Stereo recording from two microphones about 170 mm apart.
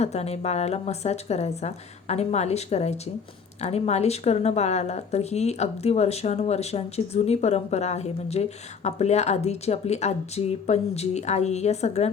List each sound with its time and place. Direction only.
0.0 s speech: 40° left (ahead or behind)